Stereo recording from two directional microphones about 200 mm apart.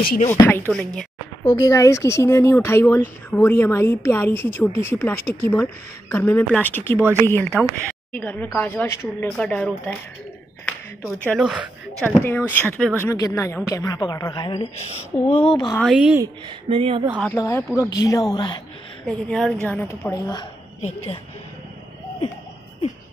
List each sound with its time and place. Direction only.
0.3 s speech: 10° left (ahead or behind)
1.4 s speech: 20° left (ahead or behind)
11.1 s speech: 5° left (ahead or behind)
11.4 s a woman's voice: 5° right (ahead or behind); by 15.8 s 20° left (ahead or behind)
15.8 s speech: 5° right (ahead or behind)
16.6 s speech: 25° right (ahead or behind)
17.2 s a woman's voice: 15° left (ahead or behind)
19.0 s speech: 5° left (ahead or behind)
20.8 s a woman's voice: 30° left (ahead or behind)